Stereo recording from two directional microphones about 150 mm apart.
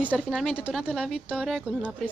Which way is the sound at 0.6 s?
10° right (ahead or behind).